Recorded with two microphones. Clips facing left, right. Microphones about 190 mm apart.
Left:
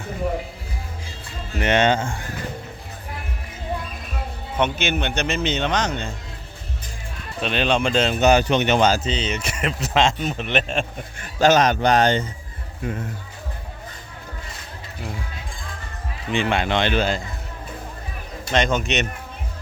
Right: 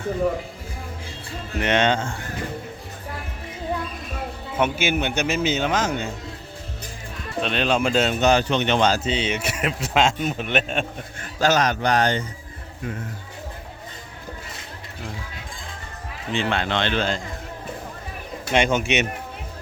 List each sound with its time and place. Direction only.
1.5 s a man's voice: centre (ahead or behind)
4.5 s a man's voice: 5° right (ahead or behind)
7.4 s a man's voice: centre (ahead or behind)
8.3 s a man's voice: 15° left (ahead or behind); by 10.8 s 5° right (ahead or behind)
11.3 s speech: 20° left (ahead or behind)
16.3 s speech: 15° left (ahead or behind)
18.5 s a man's voice: 10° right (ahead or behind)